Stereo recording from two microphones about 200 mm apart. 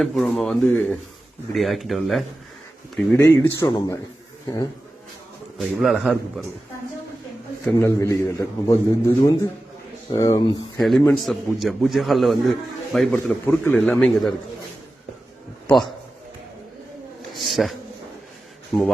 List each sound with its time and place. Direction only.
0.0 s a man's voice: centre (ahead or behind)
5.5 s a man's voice: centre (ahead or behind)
7.8 s a man's voice: 15° left (ahead or behind)
10.8 s a man's voice: centre (ahead or behind)
15.6 s a man's voice: centre (ahead or behind)
17.3 s a sound: centre (ahead or behind)
18.7 s a man's voice: 15° left (ahead or behind)